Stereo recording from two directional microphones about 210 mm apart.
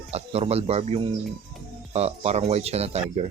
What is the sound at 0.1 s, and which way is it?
Speech, 30° right (ahead or behind).